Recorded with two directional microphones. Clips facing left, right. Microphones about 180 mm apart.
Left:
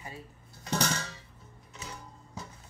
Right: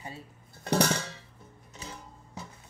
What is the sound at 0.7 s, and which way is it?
Music, 60° right (ahead or behind).